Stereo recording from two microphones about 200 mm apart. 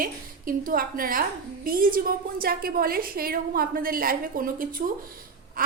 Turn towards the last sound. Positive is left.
turn(degrees=-45)  # may be behind; listen again after turning